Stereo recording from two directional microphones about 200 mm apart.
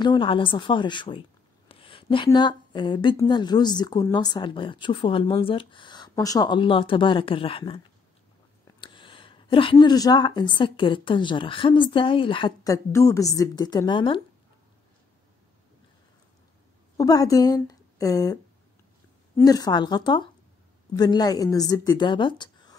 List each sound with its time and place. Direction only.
0.0 s speech: 25° left (ahead or behind)
8.8 s speech: 25° left (ahead or behind)
16.9 s a woman's voice: 20° left (ahead or behind)